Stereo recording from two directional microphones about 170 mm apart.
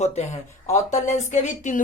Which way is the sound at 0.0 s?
40° left (ahead or behind).